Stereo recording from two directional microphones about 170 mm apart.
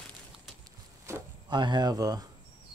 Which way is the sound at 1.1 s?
15° right (ahead or behind).